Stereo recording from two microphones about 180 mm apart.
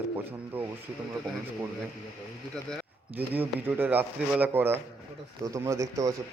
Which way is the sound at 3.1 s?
10° right (ahead or behind).